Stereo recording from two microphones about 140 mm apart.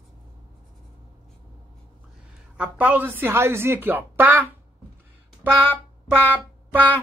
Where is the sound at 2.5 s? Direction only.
10° right (ahead or behind).